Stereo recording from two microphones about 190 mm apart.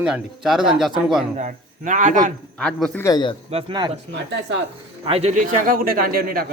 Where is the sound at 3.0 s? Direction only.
25° left (ahead or behind).